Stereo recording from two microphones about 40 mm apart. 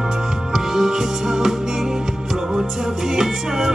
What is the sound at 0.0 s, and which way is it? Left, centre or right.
Music, centre.